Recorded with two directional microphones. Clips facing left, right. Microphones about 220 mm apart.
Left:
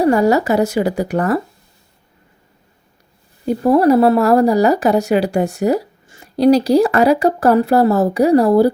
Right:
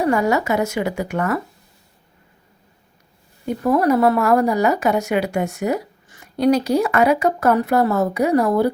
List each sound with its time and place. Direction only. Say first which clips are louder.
0.0 s speech: left 5 dB; 35° left (ahead or behind)
3.4 s speech: left 5 dB; 30° left (ahead or behind)